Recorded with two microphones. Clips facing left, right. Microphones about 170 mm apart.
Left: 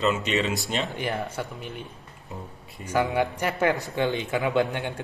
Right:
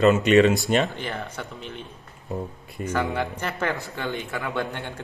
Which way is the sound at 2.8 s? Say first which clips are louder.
Left 2 dB; 10° left (ahead or behind).